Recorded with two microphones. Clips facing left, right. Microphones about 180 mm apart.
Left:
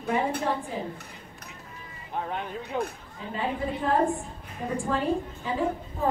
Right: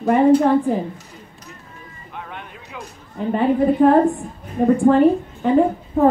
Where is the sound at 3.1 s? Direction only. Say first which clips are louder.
Right 14 dB; 60° right (ahead or behind).